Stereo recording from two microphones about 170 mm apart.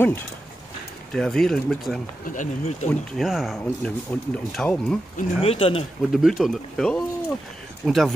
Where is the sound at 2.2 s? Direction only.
50° left (ahead or behind).